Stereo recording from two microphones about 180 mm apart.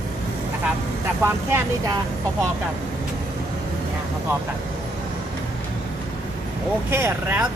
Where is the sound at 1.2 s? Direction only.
15° right (ahead or behind).